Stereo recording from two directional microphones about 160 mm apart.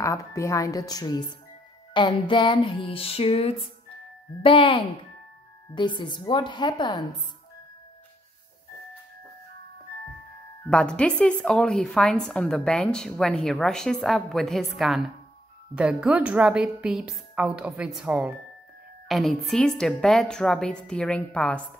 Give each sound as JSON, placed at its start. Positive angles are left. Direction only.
{"t": 0.0, "sound": "a woman's voice", "side_deg": 20}
{"t": 2.0, "sound": "music", "side_deg": 30}
{"t": 5.8, "sound": "a woman's voice", "side_deg": 30}
{"t": 10.7, "sound": "a woman's voice", "side_deg": 5}